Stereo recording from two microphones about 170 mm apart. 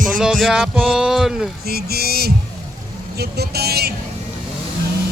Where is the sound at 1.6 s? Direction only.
65° right (ahead or behind).